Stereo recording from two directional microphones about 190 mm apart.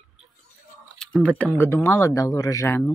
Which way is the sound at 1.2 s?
5° left (ahead or behind).